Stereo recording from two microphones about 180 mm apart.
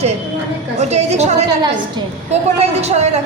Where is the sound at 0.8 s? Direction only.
40° right (ahead or behind).